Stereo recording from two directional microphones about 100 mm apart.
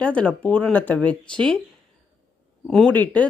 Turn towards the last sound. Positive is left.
turn(degrees=15)  # may be behind; listen again after turning